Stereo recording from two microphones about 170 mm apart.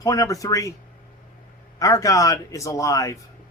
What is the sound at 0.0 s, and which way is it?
Speech, 20° left (ahead or behind).